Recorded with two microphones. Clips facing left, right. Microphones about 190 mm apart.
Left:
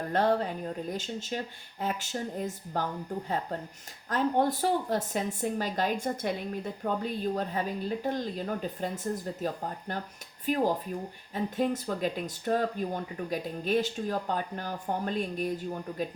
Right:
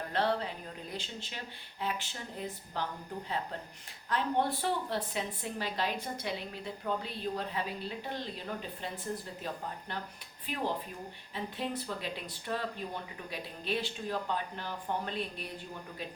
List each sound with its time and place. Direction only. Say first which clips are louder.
0.1 s speech: left 5 dB; 45° left (ahead or behind)